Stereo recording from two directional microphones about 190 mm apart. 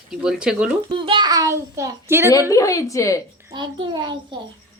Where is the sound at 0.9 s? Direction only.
25° right (ahead or behind).